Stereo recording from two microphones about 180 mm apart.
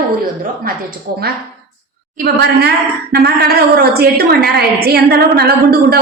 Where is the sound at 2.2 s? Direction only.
60° right (ahead or behind).